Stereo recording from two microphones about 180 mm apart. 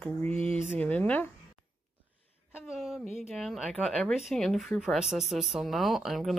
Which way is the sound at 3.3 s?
Centre (ahead or behind).